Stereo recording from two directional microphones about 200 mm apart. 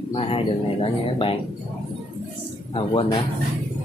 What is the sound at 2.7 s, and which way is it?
Speech, 25° left (ahead or behind).